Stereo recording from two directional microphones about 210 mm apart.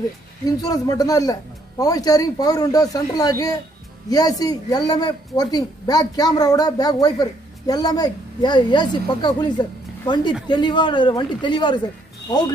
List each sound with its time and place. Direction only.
0.5 s a woman's voice: 15° left (ahead or behind)